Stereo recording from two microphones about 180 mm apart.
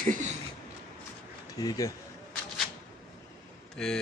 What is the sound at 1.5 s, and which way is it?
Speech, 20° left (ahead or behind).